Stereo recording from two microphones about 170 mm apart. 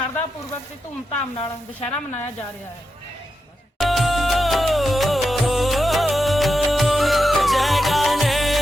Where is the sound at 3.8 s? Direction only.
Centre (ahead or behind).